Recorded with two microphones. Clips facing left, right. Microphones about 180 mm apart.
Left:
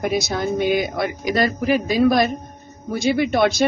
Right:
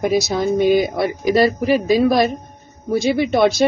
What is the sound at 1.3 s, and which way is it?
Speech, 35° right (ahead or behind).